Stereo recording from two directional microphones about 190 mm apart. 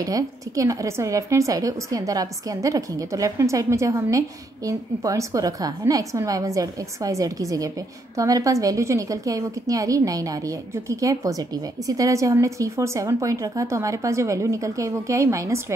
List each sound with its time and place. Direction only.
0.0 s a woman's voice: 20° right (ahead or behind)